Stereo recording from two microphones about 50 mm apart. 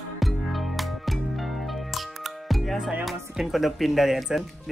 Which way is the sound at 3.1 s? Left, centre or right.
Centre.